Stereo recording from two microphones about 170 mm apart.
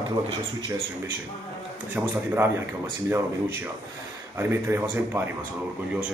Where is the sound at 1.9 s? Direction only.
10° right (ahead or behind).